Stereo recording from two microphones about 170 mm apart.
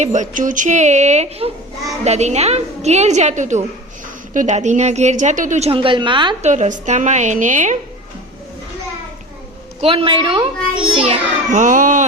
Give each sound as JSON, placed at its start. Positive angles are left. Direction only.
{"t": 0.0, "sound": "a woman's voice", "side_deg": -45}
{"t": 6.4, "sound": "speech", "side_deg": -45}
{"t": 9.8, "sound": "a woman's voice", "side_deg": -30}
{"t": 11.5, "sound": "speech", "side_deg": -50}